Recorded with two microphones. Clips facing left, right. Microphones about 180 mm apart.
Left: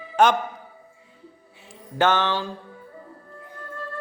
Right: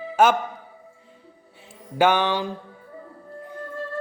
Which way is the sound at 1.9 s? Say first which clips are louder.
Right 2 dB; 15° right (ahead or behind).